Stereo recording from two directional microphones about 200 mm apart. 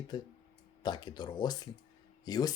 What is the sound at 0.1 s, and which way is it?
Speech, 20° left (ahead or behind).